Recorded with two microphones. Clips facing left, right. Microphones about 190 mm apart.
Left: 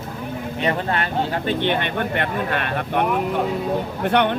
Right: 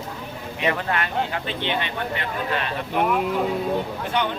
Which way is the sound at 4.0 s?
65° left (ahead or behind).